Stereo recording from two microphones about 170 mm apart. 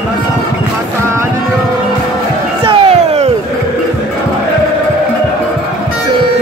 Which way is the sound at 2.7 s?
35° right (ahead or behind).